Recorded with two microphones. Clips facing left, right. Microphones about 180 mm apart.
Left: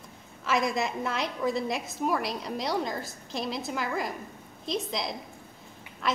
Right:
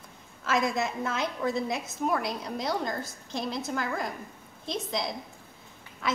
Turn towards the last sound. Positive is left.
turn(degrees=0)  # may be behind; listen again after turning